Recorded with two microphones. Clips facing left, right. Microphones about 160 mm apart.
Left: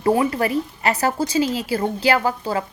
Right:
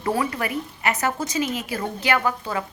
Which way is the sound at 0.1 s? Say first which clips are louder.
Left 6 dB; 30° left (ahead or behind).